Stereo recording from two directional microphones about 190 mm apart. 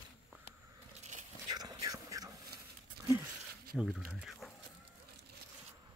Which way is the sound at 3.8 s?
Centre (ahead or behind).